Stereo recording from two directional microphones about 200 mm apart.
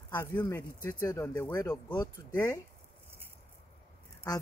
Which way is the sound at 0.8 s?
15° left (ahead or behind).